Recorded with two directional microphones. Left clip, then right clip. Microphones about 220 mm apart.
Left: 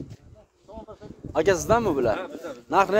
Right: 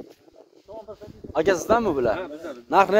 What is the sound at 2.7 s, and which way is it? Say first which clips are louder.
Speech: right 3 dB; 5° right (ahead or behind).